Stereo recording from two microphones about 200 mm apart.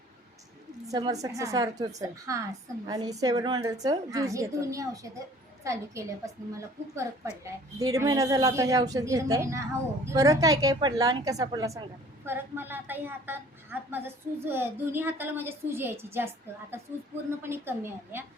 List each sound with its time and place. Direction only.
0.9 s a woman's voice: 20° right (ahead or behind)
17.4 s a woman's voice: 10° right (ahead or behind)